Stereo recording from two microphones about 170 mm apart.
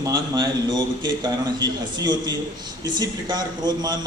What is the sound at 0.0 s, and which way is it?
A man's voice, 25° right (ahead or behind).